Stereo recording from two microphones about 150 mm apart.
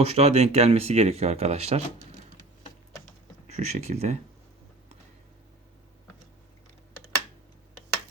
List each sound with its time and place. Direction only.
0.0 s speech: 45° right (ahead or behind)
3.4 s speech: 50° right (ahead or behind)